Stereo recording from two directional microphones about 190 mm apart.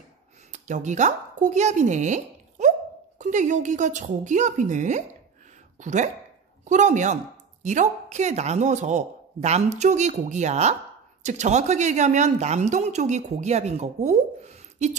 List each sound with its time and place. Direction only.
0.5 s speech: 40° right (ahead or behind)